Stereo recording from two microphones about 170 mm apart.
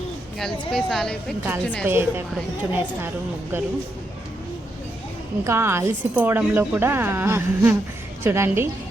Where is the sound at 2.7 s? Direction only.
10° right (ahead or behind).